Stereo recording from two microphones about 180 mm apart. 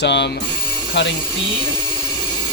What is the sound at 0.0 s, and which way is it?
Speech, 75° left (ahead or behind).